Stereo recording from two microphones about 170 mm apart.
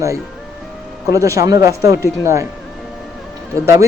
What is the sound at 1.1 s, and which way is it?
A man's voice, 20° right (ahead or behind).